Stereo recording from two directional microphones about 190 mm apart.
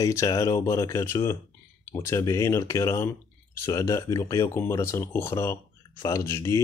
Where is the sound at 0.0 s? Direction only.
15° left (ahead or behind).